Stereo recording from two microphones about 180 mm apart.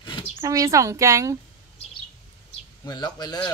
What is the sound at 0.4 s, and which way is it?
A woman's voice, 20° right (ahead or behind).